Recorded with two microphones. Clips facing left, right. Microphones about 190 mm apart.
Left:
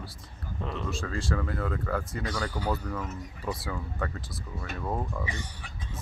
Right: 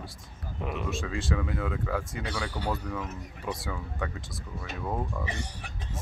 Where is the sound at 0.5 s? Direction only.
15° right (ahead or behind).